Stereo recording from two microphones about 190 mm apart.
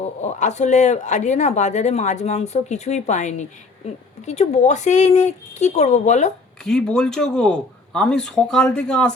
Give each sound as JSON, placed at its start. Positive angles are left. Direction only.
{"t": 0.0, "sound": "speech", "side_deg": 40}
{"t": 6.7, "sound": "speech", "side_deg": 5}